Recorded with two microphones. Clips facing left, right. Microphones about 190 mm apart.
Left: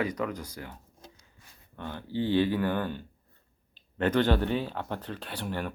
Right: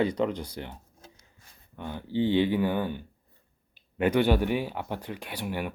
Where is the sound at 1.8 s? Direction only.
15° right (ahead or behind).